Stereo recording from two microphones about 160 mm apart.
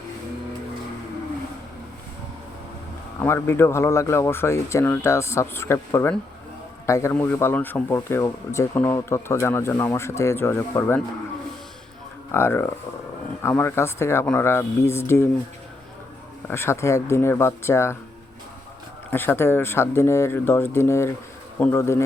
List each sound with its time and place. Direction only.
3.2 s speech: 15° left (ahead or behind)
12.3 s speech: 15° left (ahead or behind)
16.5 s speech: 15° left (ahead or behind)
19.1 s speech: 15° left (ahead or behind)